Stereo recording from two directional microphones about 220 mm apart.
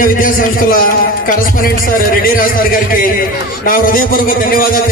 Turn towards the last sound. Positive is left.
turn(degrees=40)  # may be behind; listen again after turning